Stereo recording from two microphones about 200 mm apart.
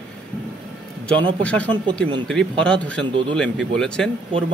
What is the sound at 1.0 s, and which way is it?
A man's voice, 5° left (ahead or behind).